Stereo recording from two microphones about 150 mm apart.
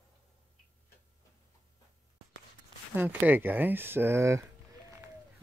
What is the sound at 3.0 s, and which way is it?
Speech, 10° right (ahead or behind).